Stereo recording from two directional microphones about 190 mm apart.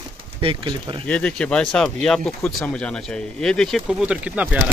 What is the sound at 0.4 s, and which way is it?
Speech, 30° right (ahead or behind).